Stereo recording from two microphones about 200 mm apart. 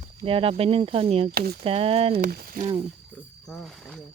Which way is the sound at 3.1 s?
5° left (ahead or behind).